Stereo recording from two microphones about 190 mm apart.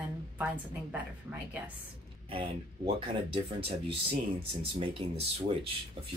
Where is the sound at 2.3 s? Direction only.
30° right (ahead or behind).